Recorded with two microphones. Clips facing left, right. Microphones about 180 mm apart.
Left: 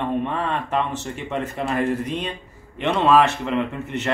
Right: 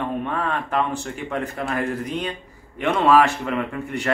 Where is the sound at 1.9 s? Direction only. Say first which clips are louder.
Left 2 dB; 25° left (ahead or behind).